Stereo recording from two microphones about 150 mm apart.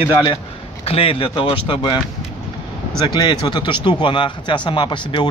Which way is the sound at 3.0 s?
30° left (ahead or behind).